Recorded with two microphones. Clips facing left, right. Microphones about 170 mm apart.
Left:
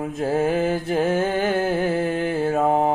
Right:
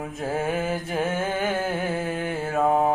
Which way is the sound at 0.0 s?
25° left (ahead or behind).